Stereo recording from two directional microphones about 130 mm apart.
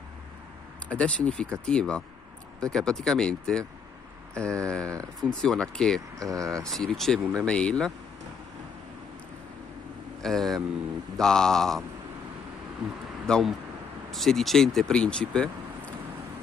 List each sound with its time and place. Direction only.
0.8 s speech: 10° left (ahead or behind)
4.6 s speech: 5° left (ahead or behind)
6.1 s speech: 25° right (ahead or behind)
6.6 s speech: 5° left (ahead or behind)
10.2 s speech: centre (ahead or behind)
12.8 s speech: 5° right (ahead or behind)